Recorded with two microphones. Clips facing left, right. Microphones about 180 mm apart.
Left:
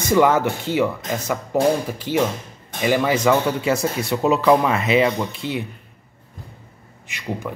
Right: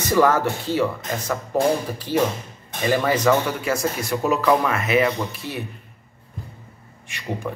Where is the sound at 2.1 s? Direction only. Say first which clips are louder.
Left 1 dB; 65° left (ahead or behind).